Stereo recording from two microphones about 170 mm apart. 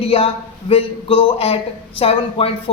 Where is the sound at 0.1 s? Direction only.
35° left (ahead or behind).